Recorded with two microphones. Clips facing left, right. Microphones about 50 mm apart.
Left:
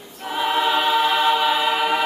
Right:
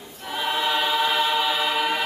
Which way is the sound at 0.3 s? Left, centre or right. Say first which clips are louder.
Left 4 dB; centre.